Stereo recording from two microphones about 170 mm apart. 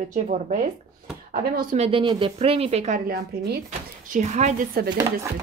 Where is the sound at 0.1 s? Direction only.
50° right (ahead or behind).